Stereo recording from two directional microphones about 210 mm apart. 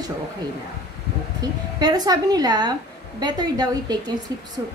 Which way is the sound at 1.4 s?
20° right (ahead or behind).